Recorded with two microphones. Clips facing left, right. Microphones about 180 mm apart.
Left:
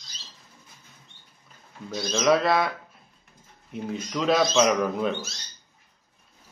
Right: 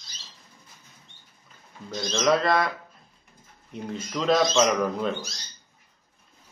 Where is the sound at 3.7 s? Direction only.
5° left (ahead or behind).